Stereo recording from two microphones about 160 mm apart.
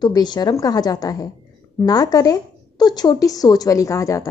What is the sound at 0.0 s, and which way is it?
Speech, 25° left (ahead or behind).